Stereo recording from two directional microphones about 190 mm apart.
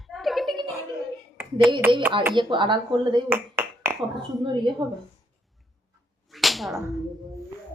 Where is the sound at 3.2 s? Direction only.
10° right (ahead or behind).